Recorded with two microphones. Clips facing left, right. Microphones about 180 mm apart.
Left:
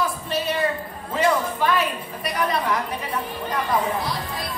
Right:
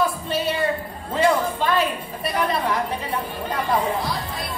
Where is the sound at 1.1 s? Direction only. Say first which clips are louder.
Right 2 dB; 25° right (ahead or behind).